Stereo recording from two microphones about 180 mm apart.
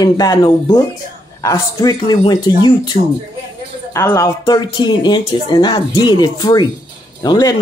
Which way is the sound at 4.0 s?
15° left (ahead or behind).